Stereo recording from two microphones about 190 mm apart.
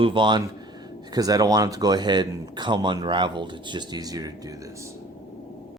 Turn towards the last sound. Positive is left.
turn(degrees=-15)  # may be behind; listen again after turning